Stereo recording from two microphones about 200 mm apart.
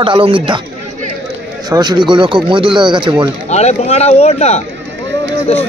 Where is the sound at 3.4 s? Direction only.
35° left (ahead or behind).